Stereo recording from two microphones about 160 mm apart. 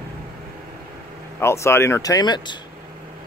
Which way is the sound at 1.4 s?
15° left (ahead or behind).